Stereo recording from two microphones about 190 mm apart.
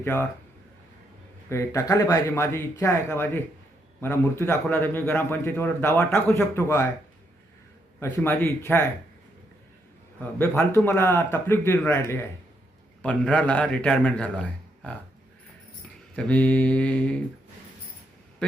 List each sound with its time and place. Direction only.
0.0 s a man's voice: 15° left (ahead or behind)
1.5 s a man's voice: 15° left (ahead or behind)
7.9 s a man's voice: 10° left (ahead or behind)
10.3 s a man's voice: 15° left (ahead or behind)
16.1 s a man's voice: 5° left (ahead or behind)